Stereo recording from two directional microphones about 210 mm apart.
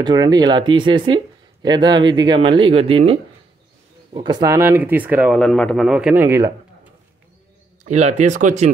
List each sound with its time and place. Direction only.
0.0 s speech: 20° right (ahead or behind)
5.4 s a man's voice: 5° left (ahead or behind); by 6.9 s 15° right (ahead or behind)
7.8 s speech: 35° right (ahead or behind)